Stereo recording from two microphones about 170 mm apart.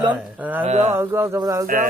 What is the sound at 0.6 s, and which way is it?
Speech, 40° right (ahead or behind).